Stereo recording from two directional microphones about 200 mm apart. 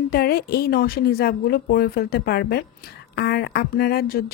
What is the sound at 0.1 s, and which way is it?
A woman's voice, 50° left (ahead or behind).